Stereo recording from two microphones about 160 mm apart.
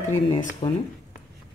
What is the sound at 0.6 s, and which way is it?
Speech, 30° left (ahead or behind).